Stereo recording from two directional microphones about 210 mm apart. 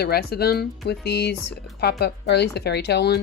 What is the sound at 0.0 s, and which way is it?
Speech, 50° left (ahead or behind).